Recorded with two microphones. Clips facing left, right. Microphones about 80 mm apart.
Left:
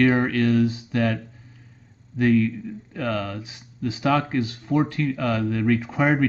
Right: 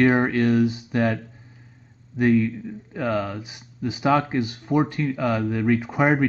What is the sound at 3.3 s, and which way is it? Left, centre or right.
Speech, centre.